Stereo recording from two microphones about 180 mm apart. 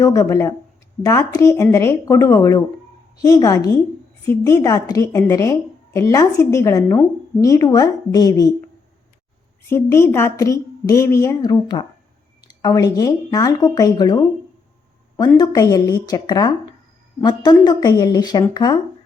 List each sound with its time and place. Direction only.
0.0 s a woman's voice: 20° left (ahead or behind)
9.6 s a woman's voice: 15° left (ahead or behind)
15.4 s speech: 20° left (ahead or behind)